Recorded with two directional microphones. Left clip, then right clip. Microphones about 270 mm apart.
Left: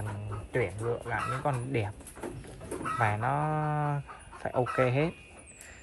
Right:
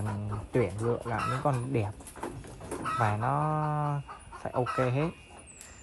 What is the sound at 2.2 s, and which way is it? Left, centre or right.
Chicken, centre.